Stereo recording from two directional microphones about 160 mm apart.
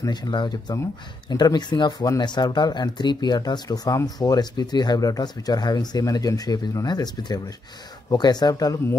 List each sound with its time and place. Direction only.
0.0 s speech: 25° left (ahead or behind)